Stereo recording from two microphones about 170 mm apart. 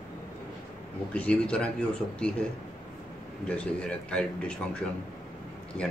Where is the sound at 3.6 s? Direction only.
5° left (ahead or behind).